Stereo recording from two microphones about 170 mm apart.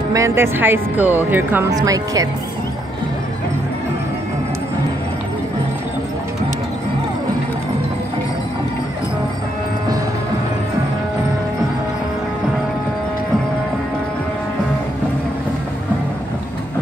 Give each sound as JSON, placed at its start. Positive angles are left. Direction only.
{"t": 0.1, "sound": "speech", "side_deg": -15}